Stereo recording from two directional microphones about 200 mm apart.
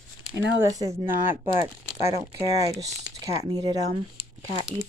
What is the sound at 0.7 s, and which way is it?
Speech, 15° right (ahead or behind).